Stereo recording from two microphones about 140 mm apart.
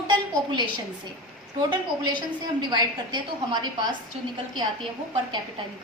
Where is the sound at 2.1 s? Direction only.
35° right (ahead or behind).